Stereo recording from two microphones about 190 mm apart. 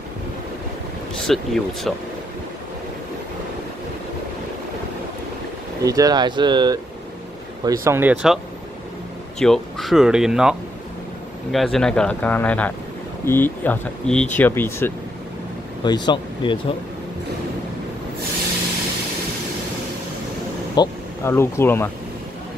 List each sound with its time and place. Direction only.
1.1 s speech: centre (ahead or behind)
5.8 s speech: 20° right (ahead or behind)
9.4 s speech: centre (ahead or behind)
11.5 s speech: centre (ahead or behind)
15.8 s speech: 25° left (ahead or behind)
20.7 s speech: 15° left (ahead or behind)